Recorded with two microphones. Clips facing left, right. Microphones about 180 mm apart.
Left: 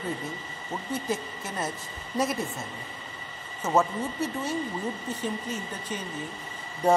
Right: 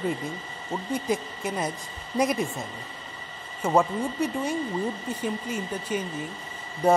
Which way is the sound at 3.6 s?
15° right (ahead or behind).